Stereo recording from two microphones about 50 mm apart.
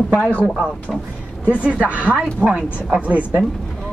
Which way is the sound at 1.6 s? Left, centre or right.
Right.